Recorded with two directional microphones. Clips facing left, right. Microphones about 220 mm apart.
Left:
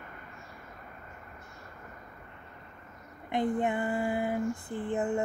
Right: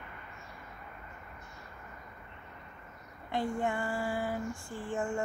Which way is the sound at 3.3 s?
20° left (ahead or behind).